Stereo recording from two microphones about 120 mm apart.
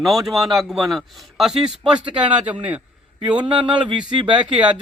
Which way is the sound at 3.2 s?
40° right (ahead or behind).